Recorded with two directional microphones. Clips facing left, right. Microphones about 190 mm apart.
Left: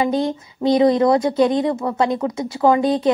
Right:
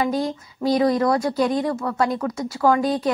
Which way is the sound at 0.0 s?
25° left (ahead or behind).